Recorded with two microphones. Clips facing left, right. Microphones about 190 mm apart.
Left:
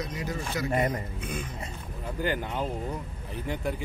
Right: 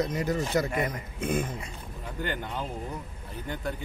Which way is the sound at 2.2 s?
5° left (ahead or behind).